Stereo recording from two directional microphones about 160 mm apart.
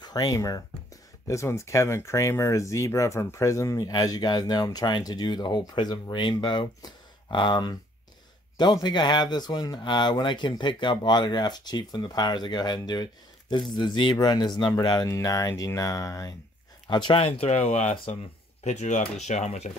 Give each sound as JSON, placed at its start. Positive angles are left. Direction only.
{"t": 0.0, "sound": "speech", "side_deg": 25}
{"t": 16.8, "sound": "speech", "side_deg": 30}